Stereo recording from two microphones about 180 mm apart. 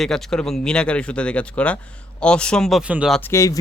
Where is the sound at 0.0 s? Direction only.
Centre (ahead or behind).